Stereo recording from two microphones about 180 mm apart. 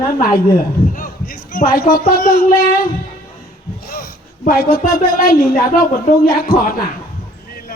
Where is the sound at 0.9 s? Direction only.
50° left (ahead or behind).